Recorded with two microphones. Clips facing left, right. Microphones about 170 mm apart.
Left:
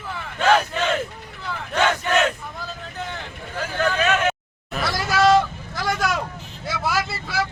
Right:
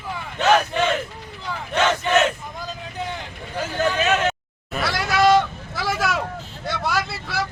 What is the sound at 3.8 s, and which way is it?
Vehicle, 20° right (ahead or behind).